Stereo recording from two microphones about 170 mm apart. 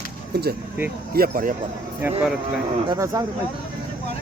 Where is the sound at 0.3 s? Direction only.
70° right (ahead or behind).